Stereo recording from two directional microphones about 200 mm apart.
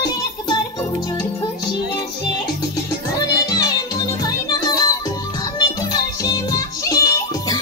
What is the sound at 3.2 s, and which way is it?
Music, 20° left (ahead or behind).